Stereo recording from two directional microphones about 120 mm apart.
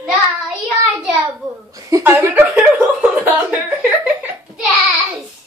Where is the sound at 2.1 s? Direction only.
15° right (ahead or behind).